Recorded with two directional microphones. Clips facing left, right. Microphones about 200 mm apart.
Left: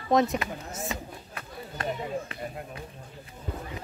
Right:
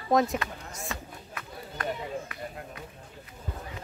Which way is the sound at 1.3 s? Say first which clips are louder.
Right 1 dB; 25° left (ahead or behind).